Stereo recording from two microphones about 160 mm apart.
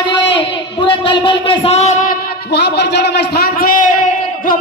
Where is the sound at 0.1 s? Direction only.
30° left (ahead or behind).